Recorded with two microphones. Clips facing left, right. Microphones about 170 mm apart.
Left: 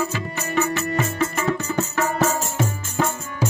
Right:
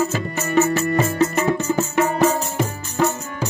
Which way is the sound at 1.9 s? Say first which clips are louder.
Right 4 dB; 15° right (ahead or behind).